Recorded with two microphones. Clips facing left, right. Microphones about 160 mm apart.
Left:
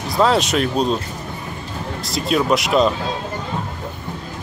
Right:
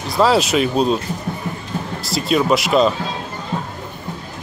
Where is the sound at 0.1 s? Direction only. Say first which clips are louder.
Right 2 dB; 5° right (ahead or behind).